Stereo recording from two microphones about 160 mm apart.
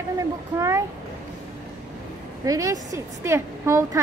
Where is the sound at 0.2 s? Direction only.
20° right (ahead or behind).